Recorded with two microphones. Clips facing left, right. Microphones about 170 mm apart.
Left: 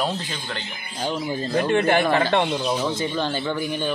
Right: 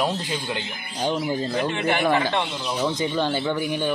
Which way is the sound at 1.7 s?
50° left (ahead or behind).